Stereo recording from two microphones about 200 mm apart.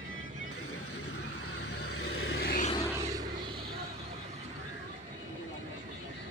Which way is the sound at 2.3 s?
50° left (ahead or behind).